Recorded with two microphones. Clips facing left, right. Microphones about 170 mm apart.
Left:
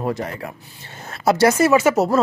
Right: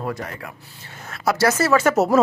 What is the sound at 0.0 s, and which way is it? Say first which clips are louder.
Speech: left 4 dB; 25° left (ahead or behind).